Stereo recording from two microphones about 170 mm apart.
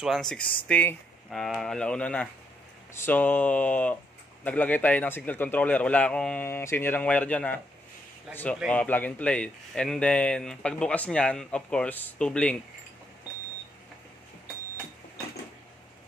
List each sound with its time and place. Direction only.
0.0 s speech: centre (ahead or behind)